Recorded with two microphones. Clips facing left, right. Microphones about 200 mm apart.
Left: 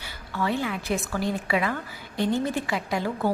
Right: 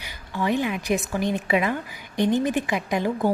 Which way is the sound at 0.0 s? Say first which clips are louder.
Right 2 dB; 15° right (ahead or behind).